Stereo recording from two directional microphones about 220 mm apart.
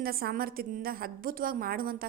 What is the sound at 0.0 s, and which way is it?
A woman's voice, 45° right (ahead or behind).